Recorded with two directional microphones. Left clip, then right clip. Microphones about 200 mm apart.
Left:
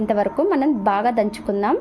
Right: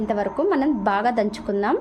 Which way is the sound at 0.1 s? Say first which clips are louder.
Left 3 dB; 15° left (ahead or behind).